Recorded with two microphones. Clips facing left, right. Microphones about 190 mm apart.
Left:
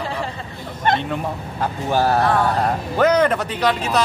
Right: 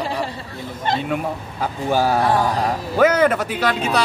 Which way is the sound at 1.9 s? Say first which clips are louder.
Even; 10° right (ahead or behind).